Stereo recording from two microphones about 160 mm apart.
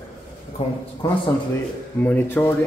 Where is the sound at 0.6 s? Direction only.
40° left (ahead or behind).